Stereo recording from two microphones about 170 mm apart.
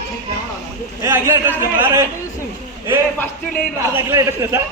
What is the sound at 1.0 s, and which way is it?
Speech, 15° right (ahead or behind).